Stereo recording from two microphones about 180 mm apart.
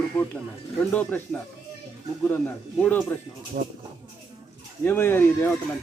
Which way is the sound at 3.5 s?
50° right (ahead or behind).